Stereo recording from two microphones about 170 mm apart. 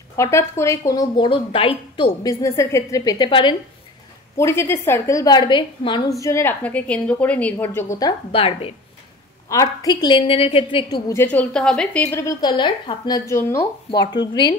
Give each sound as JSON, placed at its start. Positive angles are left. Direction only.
{"t": 0.1, "sound": "speech", "side_deg": 15}
{"t": 2.2, "sound": "speech", "side_deg": 15}
{"t": 4.4, "sound": "a woman's voice", "side_deg": 15}
{"t": 8.3, "sound": "a woman's voice", "side_deg": 35}
{"t": 9.5, "sound": "speech", "side_deg": 20}
{"t": 11.1, "sound": "a woman's voice", "side_deg": 10}